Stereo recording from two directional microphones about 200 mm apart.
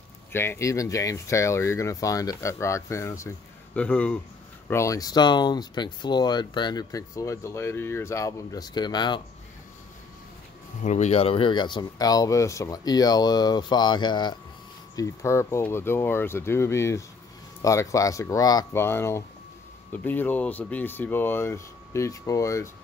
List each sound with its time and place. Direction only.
0.3 s speech: 10° left (ahead or behind)
10.8 s speech: 35° left (ahead or behind); by 22.7 s 15° left (ahead or behind)